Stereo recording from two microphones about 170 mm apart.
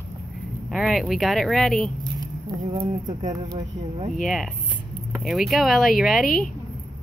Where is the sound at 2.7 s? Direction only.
40° right (ahead or behind).